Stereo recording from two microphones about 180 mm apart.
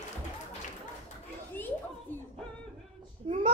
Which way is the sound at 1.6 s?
10° left (ahead or behind).